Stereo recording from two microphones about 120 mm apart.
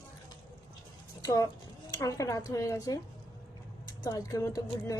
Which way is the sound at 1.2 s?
30° left (ahead or behind).